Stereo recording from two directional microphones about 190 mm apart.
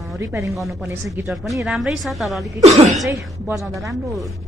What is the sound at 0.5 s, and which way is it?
A woman's voice, centre (ahead or behind).